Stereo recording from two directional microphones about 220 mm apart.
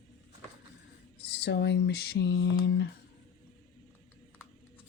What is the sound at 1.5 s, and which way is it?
Speech, 50° left (ahead or behind).